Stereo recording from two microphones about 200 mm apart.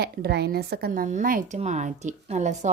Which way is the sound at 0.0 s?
55° right (ahead or behind).